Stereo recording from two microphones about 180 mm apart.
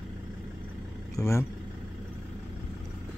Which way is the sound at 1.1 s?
15° left (ahead or behind).